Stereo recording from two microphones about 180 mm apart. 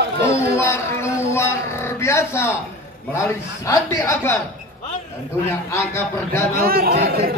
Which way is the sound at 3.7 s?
15° left (ahead or behind).